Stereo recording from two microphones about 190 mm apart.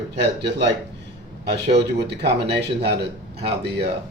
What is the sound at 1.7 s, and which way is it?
Speech, 60° right (ahead or behind).